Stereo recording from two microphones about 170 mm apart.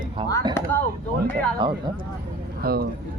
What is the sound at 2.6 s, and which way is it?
Speech, 65° right (ahead or behind).